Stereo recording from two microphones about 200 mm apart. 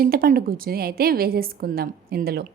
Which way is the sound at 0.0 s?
45° right (ahead or behind).